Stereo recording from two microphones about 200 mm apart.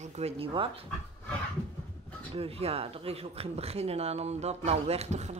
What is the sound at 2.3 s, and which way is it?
Speech, 30° right (ahead or behind).